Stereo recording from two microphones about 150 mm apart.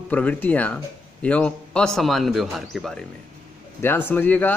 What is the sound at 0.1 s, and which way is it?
A man's voice, 10° left (ahead or behind).